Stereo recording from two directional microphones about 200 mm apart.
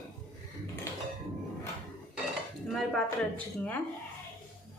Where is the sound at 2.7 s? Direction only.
Centre (ahead or behind).